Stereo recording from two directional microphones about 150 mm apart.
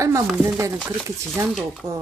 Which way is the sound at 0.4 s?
20° right (ahead or behind).